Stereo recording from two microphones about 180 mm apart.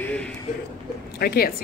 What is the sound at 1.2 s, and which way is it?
Speech, 55° left (ahead or behind).